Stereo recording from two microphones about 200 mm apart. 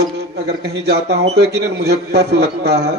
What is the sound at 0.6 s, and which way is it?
A man's voice, 55° right (ahead or behind).